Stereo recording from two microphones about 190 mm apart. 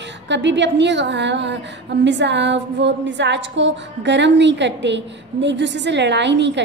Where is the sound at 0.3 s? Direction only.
65° right (ahead or behind).